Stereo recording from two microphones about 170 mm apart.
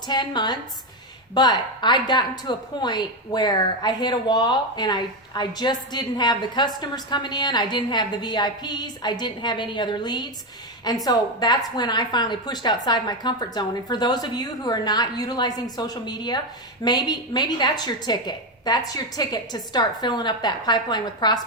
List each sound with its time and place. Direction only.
0.1 s a woman's voice: 25° left (ahead or behind)